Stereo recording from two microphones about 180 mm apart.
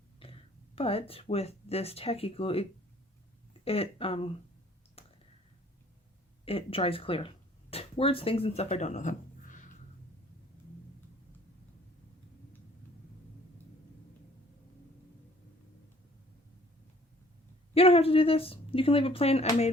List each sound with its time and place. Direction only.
0.2 s speech: 30° left (ahead or behind)
5.0 s clicking: 35° left (ahead or behind)
6.4 s speech: 30° left (ahead or behind)
17.7 s speech: 30° left (ahead or behind)